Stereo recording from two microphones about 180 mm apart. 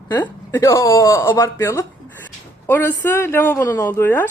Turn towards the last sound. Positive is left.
turn(degrees=10)  # may be behind; listen again after turning